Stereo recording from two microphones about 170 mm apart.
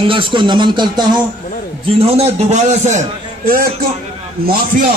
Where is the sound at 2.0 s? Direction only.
40° right (ahead or behind).